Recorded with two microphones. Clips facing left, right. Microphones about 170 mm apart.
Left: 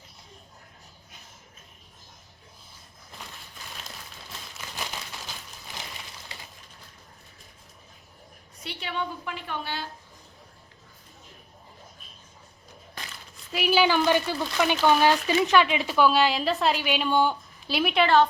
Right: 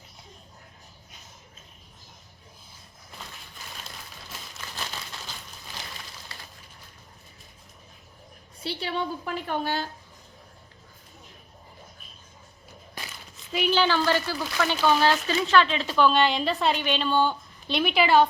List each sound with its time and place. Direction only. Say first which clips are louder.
8.6 s a woman's voice: right 3 dB; 35° right (ahead or behind)
13.5 s speech: left 1 dB; 5° left (ahead or behind)